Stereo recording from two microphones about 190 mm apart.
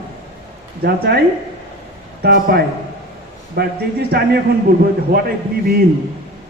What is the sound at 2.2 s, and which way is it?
Speech, 55° right (ahead or behind).